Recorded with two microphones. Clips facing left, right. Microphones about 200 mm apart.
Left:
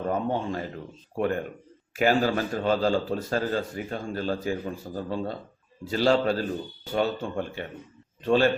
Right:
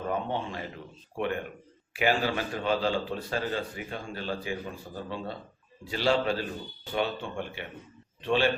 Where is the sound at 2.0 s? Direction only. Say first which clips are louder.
Left 4 dB; 45° left (ahead or behind).